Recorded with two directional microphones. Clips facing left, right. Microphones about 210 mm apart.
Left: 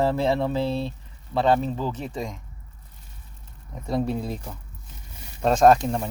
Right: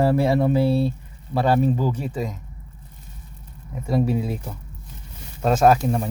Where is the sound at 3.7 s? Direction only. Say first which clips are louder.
Right 4 dB; 5° right (ahead or behind).